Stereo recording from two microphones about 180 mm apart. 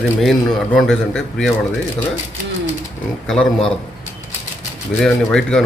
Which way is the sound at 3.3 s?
5° left (ahead or behind).